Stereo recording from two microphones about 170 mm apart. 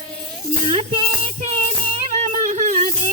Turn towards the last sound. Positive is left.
turn(degrees=-50)  # may be behind; listen again after turning